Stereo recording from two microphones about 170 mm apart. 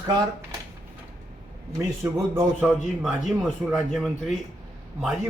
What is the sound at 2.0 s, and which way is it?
Speech, 15° right (ahead or behind).